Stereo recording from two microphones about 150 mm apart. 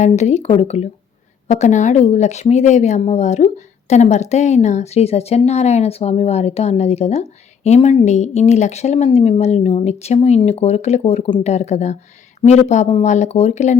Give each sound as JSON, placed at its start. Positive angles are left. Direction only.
{"t": 0.0, "sound": "speech", "side_deg": 50}